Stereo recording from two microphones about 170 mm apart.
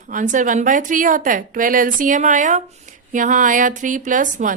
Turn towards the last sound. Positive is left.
turn(degrees=-50)  # may be behind; listen again after turning